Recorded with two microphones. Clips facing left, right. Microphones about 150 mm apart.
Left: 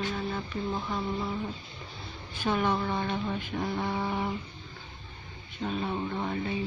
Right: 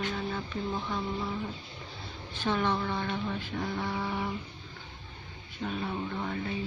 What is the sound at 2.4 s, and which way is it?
Speech, 10° left (ahead or behind).